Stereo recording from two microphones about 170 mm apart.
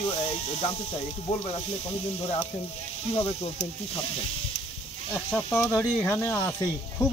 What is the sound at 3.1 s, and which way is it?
Speech, 35° left (ahead or behind).